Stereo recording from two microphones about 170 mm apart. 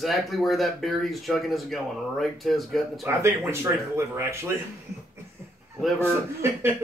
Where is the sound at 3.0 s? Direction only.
15° right (ahead or behind).